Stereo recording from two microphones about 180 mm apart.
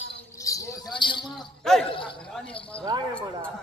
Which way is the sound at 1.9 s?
30° left (ahead or behind).